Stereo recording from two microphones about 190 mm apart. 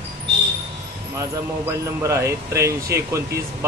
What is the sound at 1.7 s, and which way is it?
Speech, 15° right (ahead or behind).